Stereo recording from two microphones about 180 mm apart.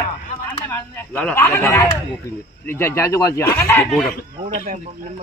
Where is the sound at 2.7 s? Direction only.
15° left (ahead or behind).